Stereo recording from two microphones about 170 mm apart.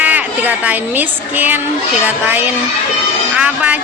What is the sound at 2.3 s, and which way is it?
A woman's voice, 10° right (ahead or behind).